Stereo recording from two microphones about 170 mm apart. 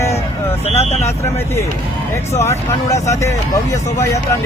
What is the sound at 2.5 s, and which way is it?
Speech, 15° left (ahead or behind).